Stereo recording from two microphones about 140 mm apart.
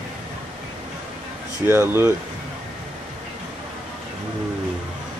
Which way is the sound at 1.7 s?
20° right (ahead or behind).